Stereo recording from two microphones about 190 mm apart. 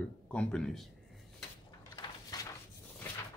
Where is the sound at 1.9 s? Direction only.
20° left (ahead or behind).